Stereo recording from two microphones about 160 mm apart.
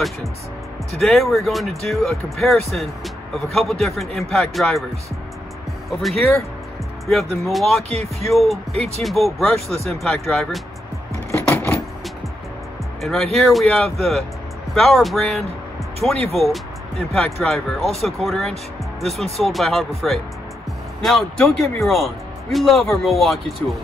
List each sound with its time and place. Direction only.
1.0 s speech: centre (ahead or behind)
5.9 s speech: centre (ahead or behind)
7.9 s speech: 40° right (ahead or behind)
8.3 s speech: centre (ahead or behind)
8.7 s speech: 40° right (ahead or behind)
9.0 s speech: centre (ahead or behind)
11.4 s vehicle: 10° left (ahead or behind)
13.0 s speech: centre (ahead or behind)